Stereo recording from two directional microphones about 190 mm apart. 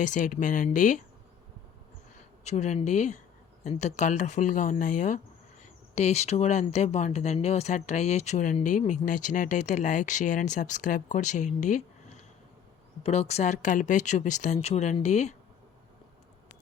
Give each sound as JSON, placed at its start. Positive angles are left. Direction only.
{"t": 0.0, "sound": "speech", "side_deg": 40}
{"t": 2.4, "sound": "speech", "side_deg": 35}